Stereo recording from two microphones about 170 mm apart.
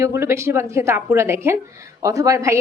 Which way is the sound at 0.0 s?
15° right (ahead or behind).